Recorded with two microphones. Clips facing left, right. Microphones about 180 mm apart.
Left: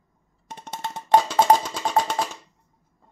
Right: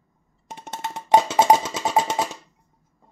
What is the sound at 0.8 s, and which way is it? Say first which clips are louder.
Music: right 1 dB; 20° right (ahead or behind).